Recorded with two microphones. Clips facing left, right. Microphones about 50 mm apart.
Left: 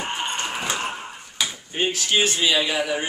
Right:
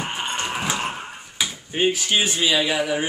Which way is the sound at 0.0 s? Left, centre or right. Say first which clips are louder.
Even; centre.